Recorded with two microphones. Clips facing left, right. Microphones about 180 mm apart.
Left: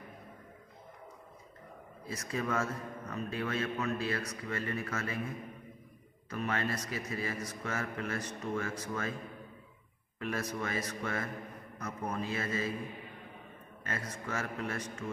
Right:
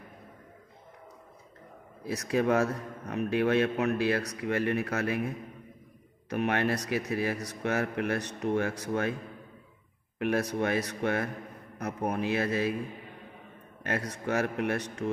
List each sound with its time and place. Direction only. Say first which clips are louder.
2.0 s a man's voice: right 9 dB; 75° right (ahead or behind)
6.3 s a man's voice: right 7 dB; 70° right (ahead or behind)
10.1 s a man's voice: right 8 dB; 65° right (ahead or behind)
13.8 s a man's voice: right 8 dB; 70° right (ahead or behind)